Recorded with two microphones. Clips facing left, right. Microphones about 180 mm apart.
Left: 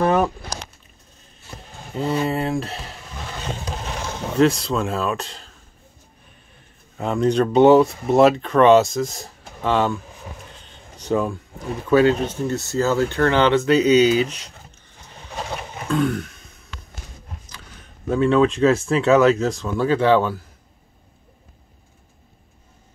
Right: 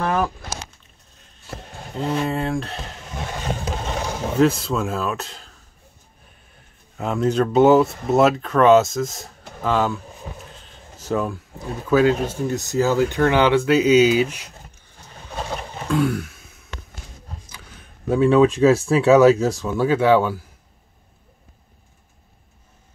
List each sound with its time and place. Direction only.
0.0 s a sound: 20° left (ahead or behind)
2.0 s speech: 5° left (ahead or behind)
4.0 s speech: 15° right (ahead or behind)
7.0 s speech: 5° right (ahead or behind)
10.6 s a sound: centre (ahead or behind)
11.6 s speech: centre (ahead or behind)
15.5 s a sound: 5° left (ahead or behind)
16.0 s throat clearing: 5° right (ahead or behind)
18.1 s speech: 10° right (ahead or behind)